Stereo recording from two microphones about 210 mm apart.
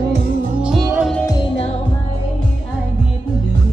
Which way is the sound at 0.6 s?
5° right (ahead or behind).